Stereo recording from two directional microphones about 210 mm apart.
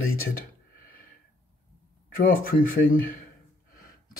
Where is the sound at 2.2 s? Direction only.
40° left (ahead or behind).